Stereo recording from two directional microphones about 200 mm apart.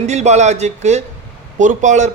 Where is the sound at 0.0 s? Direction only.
35° right (ahead or behind).